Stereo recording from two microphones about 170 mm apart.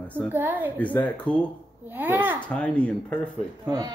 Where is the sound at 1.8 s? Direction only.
10° right (ahead or behind).